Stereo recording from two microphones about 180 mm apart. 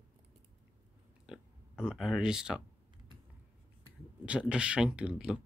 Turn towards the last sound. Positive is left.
turn(degrees=-5)  # may be behind; listen again after turning